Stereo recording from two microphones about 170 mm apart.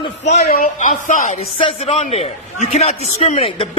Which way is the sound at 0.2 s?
40° left (ahead or behind).